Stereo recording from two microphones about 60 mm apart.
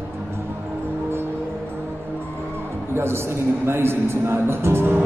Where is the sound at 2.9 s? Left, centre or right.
Right.